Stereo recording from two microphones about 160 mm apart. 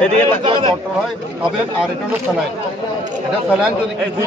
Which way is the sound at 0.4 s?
30° right (ahead or behind).